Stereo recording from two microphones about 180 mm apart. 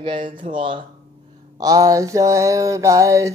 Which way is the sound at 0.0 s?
30° right (ahead or behind).